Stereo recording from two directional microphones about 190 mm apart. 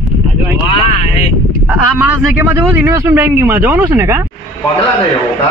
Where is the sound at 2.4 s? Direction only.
15° right (ahead or behind).